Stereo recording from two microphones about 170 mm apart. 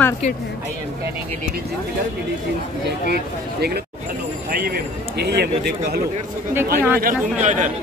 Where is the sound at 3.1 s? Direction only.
70° right (ahead or behind).